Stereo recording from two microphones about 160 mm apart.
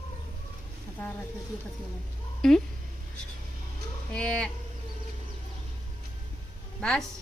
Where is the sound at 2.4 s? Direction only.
Centre (ahead or behind).